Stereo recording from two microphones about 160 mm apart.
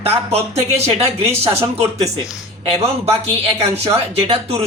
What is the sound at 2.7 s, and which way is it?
Speech, 40° right (ahead or behind).